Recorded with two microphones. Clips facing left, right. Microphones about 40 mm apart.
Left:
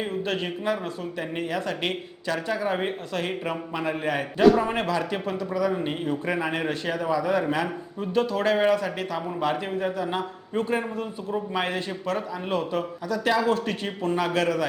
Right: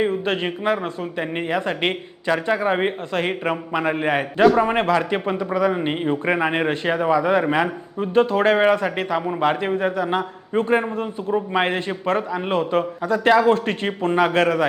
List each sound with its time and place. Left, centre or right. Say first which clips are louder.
0.0 s a man's voice: right 7 dB; right